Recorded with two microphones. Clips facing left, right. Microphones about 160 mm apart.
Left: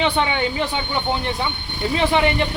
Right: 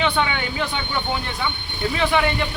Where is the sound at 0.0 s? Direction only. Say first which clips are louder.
Left 2 dB; 25° left (ahead or behind).